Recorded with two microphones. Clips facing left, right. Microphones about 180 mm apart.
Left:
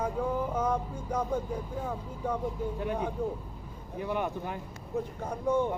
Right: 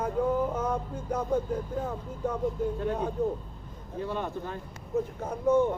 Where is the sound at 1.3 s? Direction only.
10° left (ahead or behind).